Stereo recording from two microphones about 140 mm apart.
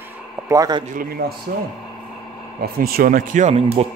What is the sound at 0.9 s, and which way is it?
Speech, 90° right.